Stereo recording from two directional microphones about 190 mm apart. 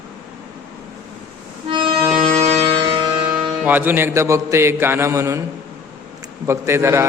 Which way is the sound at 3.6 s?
10° right (ahead or behind).